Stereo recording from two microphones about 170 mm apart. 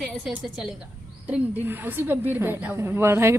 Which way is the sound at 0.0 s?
Centre (ahead or behind).